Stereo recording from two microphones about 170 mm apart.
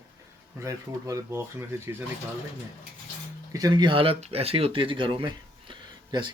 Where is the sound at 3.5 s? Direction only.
25° right (ahead or behind).